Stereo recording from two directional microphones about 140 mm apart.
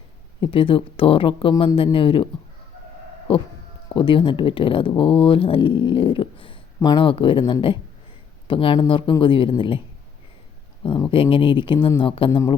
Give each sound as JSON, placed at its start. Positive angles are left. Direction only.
{"t": 0.4, "sound": "speech", "side_deg": 40}
{"t": 3.8, "sound": "speech", "side_deg": 35}
{"t": 10.8, "sound": "speech", "side_deg": 35}